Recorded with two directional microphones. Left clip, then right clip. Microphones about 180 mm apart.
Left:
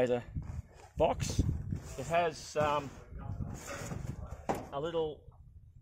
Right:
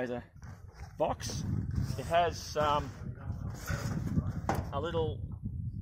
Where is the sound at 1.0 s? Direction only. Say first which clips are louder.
Left 2 dB; 50° left (ahead or behind).